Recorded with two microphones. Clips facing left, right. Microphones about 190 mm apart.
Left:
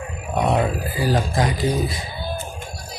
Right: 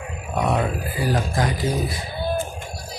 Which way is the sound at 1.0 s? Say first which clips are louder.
Left 2 dB; 25° left (ahead or behind).